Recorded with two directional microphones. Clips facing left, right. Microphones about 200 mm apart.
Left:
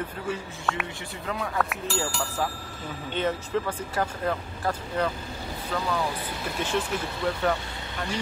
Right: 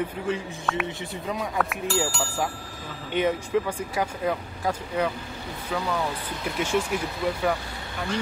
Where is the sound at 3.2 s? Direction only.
10° right (ahead or behind).